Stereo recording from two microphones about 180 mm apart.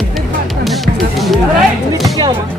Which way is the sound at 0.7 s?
Centre (ahead or behind).